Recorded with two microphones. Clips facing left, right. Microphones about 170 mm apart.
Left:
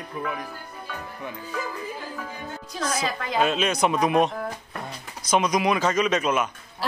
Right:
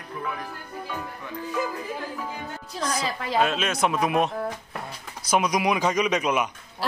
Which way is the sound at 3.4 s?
Centre (ahead or behind).